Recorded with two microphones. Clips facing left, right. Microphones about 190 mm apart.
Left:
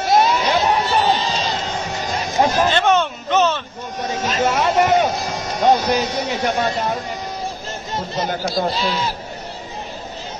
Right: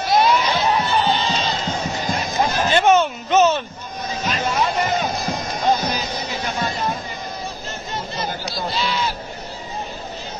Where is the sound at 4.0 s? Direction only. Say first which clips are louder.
Left 4 dB; 60° left (ahead or behind).